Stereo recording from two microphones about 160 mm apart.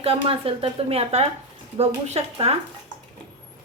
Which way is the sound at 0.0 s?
35° right (ahead or behind).